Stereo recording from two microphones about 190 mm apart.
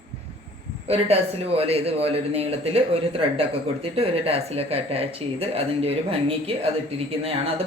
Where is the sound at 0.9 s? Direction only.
30° right (ahead or behind).